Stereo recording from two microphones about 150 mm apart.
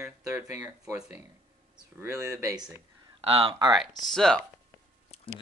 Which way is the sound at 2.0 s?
20° right (ahead or behind).